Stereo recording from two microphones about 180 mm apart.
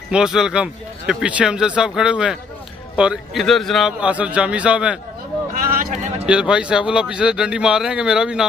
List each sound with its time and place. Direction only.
0.1 s speech: 5° right (ahead or behind)
5.8 s a sound: 50° right (ahead or behind)
6.2 s speech: 5° right (ahead or behind)